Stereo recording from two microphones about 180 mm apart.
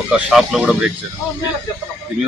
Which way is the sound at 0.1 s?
5° right (ahead or behind).